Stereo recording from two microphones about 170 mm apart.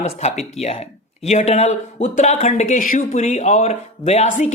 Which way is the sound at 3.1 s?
45° left (ahead or behind).